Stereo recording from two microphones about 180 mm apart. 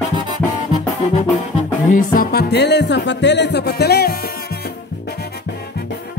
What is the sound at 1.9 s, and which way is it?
Music, 50° left (ahead or behind).